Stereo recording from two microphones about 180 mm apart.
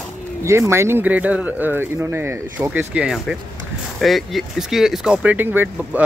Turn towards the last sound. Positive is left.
turn(degrees=-10)  # may be behind; listen again after turning